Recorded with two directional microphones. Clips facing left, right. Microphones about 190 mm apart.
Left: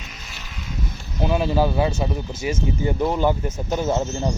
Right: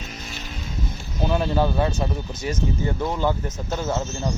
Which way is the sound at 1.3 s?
5° left (ahead or behind).